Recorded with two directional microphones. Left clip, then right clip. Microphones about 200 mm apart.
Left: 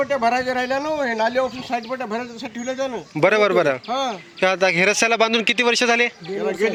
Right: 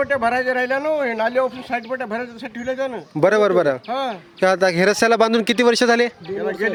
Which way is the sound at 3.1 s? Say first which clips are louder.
Right 1 dB; 25° right (ahead or behind).